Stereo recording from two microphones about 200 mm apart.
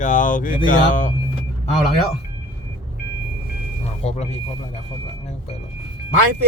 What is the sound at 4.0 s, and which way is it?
Speech, 30° left (ahead or behind).